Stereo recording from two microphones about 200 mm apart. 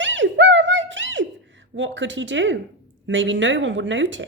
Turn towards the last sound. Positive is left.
turn(degrees=-70)  # may be behind; listen again after turning